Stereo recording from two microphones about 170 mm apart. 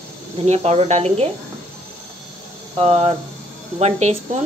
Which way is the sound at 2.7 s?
35° right (ahead or behind).